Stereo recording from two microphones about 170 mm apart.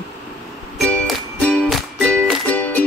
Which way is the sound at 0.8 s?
5° left (ahead or behind).